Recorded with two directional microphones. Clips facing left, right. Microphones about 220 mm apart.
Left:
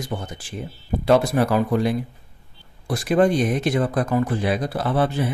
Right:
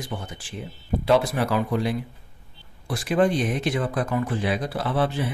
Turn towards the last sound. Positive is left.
turn(degrees=45)  # may be behind; listen again after turning